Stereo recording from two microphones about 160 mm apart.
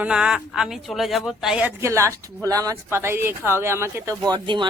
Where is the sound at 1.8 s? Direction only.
20° right (ahead or behind).